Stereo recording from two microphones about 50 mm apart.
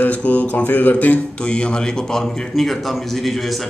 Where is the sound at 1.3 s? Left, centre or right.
Left; by 3.6 s centre.